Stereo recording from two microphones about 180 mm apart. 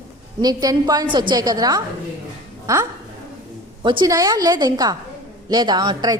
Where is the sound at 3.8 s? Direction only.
25° right (ahead or behind).